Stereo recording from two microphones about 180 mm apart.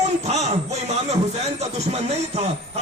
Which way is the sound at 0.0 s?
40° right (ahead or behind).